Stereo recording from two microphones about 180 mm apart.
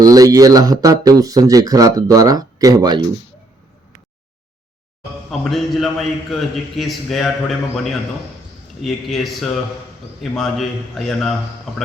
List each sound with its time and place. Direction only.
0.0 s speech: 20° right (ahead or behind)
5.4 s a man's voice: centre (ahead or behind)
8.8 s a man's voice: centre (ahead or behind)